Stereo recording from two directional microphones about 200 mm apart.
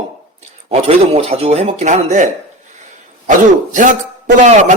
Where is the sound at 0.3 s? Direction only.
30° right (ahead or behind).